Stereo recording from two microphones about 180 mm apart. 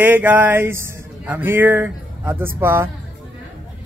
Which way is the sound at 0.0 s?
10° right (ahead or behind).